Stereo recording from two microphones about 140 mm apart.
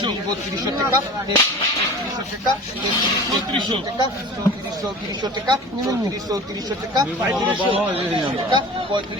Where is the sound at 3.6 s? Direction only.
35° right (ahead or behind).